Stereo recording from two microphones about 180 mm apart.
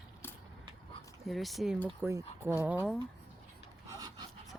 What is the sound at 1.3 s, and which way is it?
Speech, centre (ahead or behind).